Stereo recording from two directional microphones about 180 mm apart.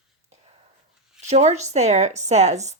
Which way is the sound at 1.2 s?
40° right (ahead or behind).